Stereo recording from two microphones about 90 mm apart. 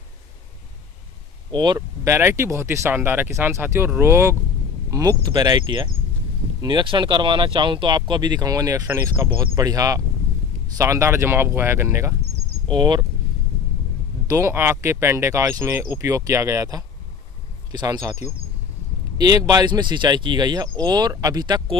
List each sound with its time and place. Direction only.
1.5 s speech: 50° right (ahead or behind)
2.0 s speech: 30° right (ahead or behind)
4.9 s speech: 50° right (ahead or behind); by 12.2 s 30° right (ahead or behind)
12.6 s speech: 55° right (ahead or behind)
14.2 s speech: 30° right (ahead or behind); by 21.6 s 50° right (ahead or behind)